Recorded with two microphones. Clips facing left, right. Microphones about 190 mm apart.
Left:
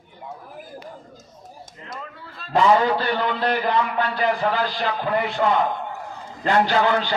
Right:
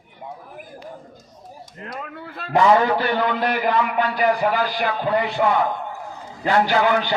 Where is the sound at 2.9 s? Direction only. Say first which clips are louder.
Right 2 dB; 15° right (ahead or behind).